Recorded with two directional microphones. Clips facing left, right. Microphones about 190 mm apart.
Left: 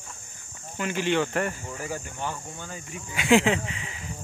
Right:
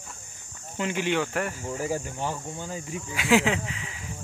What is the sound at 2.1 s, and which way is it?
Speech, 30° right (ahead or behind).